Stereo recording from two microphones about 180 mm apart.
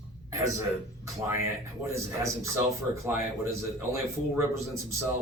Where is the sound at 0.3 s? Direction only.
15° right (ahead or behind).